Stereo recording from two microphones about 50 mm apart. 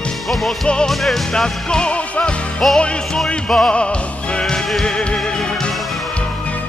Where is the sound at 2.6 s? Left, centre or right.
Centre.